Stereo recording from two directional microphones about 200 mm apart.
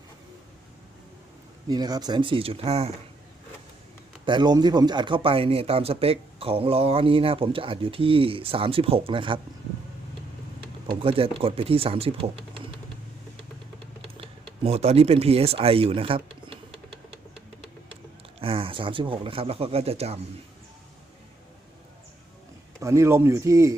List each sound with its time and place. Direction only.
1.6 s speech: 20° right (ahead or behind)
4.3 s speech: 20° right (ahead or behind)
10.8 s speech: 25° right (ahead or behind)
14.1 s a sound: 30° right (ahead or behind)
18.3 s speech: 25° right (ahead or behind)
22.8 s speech: 15° right (ahead or behind)